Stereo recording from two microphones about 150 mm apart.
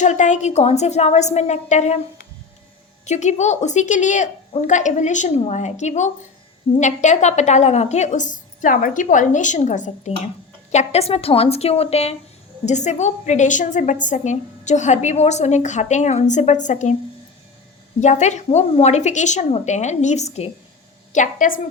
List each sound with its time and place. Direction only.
0.0 s a woman's voice: 55° left (ahead or behind)
3.1 s a woman's voice: 50° left (ahead or behind)
18.0 s a woman's voice: 50° left (ahead or behind)
21.1 s a woman's voice: 60° left (ahead or behind)